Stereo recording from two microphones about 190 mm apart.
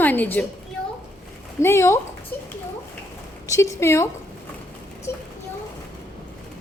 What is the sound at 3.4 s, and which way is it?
Speech, 15° left (ahead or behind).